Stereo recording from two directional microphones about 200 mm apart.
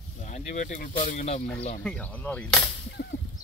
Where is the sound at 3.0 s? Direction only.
45° left (ahead or behind).